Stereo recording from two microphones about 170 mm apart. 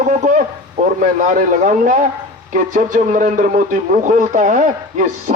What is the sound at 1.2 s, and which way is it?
A man's voice, 50° right (ahead or behind).